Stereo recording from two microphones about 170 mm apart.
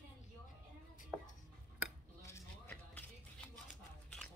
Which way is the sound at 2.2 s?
15° left (ahead or behind).